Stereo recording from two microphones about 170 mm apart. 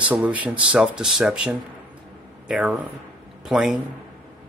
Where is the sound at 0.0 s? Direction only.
10° right (ahead or behind).